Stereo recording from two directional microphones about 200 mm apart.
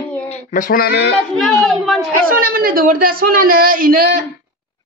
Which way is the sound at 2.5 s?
45° right (ahead or behind).